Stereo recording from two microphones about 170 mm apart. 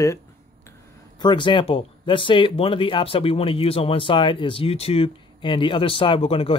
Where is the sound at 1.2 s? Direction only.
30° left (ahead or behind).